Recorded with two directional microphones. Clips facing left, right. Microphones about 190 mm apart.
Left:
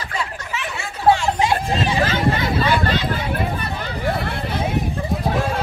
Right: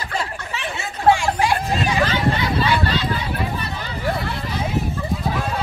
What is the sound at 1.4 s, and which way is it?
Chatter, 25° left (ahead or behind).